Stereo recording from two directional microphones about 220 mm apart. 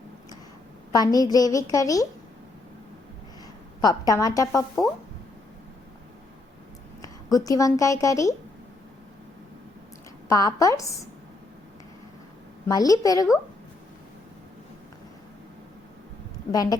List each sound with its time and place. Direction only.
0.9 s a woman's voice: 15° left (ahead or behind)
3.8 s a woman's voice: 15° left (ahead or behind)
7.0 s speech: 15° left (ahead or behind)
10.2 s a woman's voice: 15° left (ahead or behind)
12.6 s a woman's voice: 15° left (ahead or behind)
16.5 s a woman's voice: 15° left (ahead or behind)